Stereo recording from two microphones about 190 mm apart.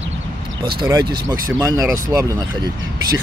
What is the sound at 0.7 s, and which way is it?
Speech, 20° right (ahead or behind).